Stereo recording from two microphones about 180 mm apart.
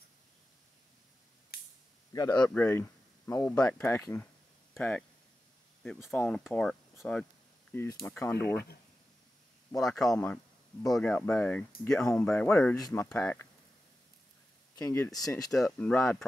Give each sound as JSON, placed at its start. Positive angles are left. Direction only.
{"t": 1.5, "sound": "spray", "side_deg": 60}
{"t": 2.1, "sound": "speech", "side_deg": 20}
{"t": 2.4, "sound": "speech", "side_deg": 10}
{"t": 6.0, "sound": "speech", "side_deg": 5}
{"t": 9.8, "sound": "speech", "side_deg": 0}
{"t": 14.8, "sound": "speech", "side_deg": 15}
{"t": 15.5, "sound": "speech", "side_deg": 5}